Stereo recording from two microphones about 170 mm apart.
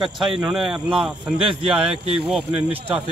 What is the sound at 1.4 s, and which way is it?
Speech, 30° right (ahead or behind).